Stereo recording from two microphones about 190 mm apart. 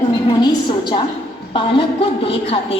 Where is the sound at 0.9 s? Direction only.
30° left (ahead or behind).